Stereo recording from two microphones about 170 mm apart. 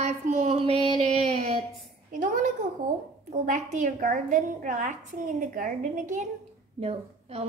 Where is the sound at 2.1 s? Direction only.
50° right (ahead or behind).